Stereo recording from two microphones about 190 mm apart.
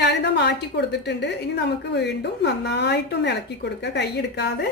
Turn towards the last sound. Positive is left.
turn(degrees=60)  # may be behind; listen again after turning